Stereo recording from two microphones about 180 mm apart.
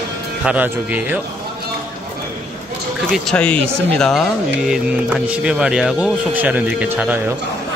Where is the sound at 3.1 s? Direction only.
5° left (ahead or behind).